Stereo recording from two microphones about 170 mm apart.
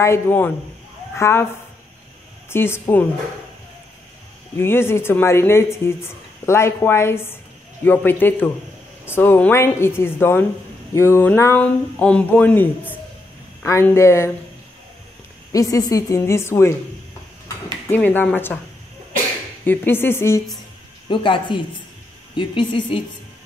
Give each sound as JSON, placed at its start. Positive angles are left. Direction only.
{"t": 0.0, "sound": "speech", "side_deg": 15}
{"t": 2.5, "sound": "speech", "side_deg": 15}
{"t": 4.6, "sound": "speech", "side_deg": 15}
{"t": 15.5, "sound": "speech", "side_deg": 20}
{"t": 17.8, "sound": "speech", "side_deg": 10}
{"t": 19.6, "sound": "speech", "side_deg": 10}
{"t": 21.1, "sound": "a woman's voice", "side_deg": 30}